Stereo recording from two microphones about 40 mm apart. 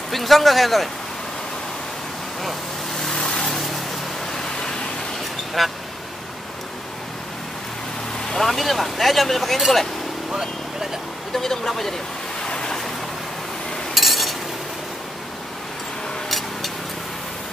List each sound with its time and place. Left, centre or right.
0.1 s speech: centre
3.0 s vehicle: centre
3.3 s vehicle: left
4.3 s a sound: centre
5.6 s speech: centre
8.3 s speech: centre
11.3 s speech: centre
12.4 s vehicle: left
13.9 s a sound: centre
16.3 s vehicle: centre